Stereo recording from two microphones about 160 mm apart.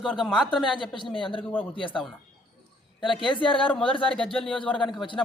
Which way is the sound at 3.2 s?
30° left (ahead or behind).